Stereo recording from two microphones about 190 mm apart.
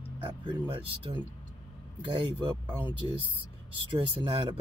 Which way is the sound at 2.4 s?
25° right (ahead or behind).